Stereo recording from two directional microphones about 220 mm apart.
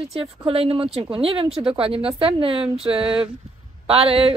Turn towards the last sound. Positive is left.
turn(degrees=-25)  # may be behind; listen again after turning